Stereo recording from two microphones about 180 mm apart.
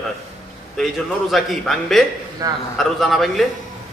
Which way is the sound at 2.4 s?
20° right (ahead or behind).